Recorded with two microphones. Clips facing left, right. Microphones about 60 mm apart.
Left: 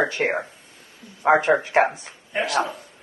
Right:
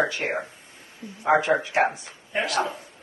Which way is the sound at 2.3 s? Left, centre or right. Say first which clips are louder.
Left 2 dB; centre.